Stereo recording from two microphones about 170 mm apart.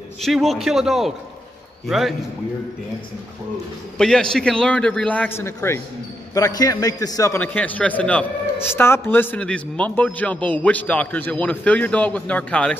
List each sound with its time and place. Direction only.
0.2 s a man's voice: centre (ahead or behind)
4.0 s a man's voice: 5° left (ahead or behind)